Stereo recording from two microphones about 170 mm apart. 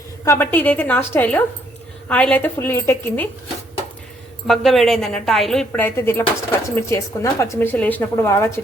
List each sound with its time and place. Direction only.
0.3 s speech: 10° left (ahead or behind)
4.4 s a woman's voice: centre (ahead or behind)